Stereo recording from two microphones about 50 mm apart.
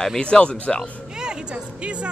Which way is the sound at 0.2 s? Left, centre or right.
Left.